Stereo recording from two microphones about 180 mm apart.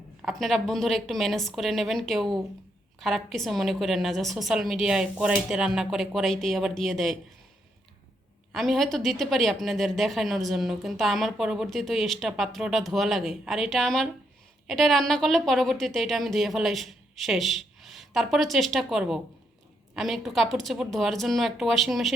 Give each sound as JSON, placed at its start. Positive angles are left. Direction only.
{"t": 0.2, "sound": "speech", "side_deg": 0}
{"t": 8.5, "sound": "speech", "side_deg": 0}